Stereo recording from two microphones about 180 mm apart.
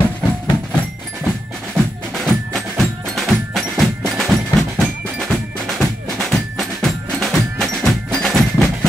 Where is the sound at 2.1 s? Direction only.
Centre (ahead or behind).